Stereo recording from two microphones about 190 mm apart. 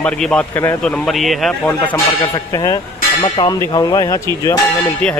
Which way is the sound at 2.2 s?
20° left (ahead or behind).